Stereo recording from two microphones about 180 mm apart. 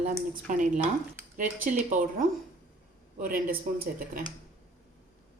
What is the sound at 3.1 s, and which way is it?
Speech, 50° right (ahead or behind).